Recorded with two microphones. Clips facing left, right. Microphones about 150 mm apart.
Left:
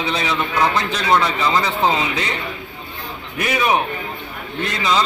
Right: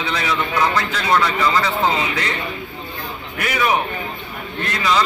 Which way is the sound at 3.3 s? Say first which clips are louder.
Left 1 dB; 20° left (ahead or behind).